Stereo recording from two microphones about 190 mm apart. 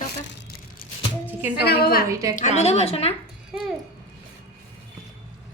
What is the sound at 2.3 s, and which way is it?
Speech, 35° left (ahead or behind).